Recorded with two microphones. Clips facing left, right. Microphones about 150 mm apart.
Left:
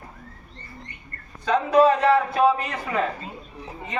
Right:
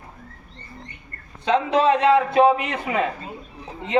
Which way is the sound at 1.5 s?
25° right (ahead or behind).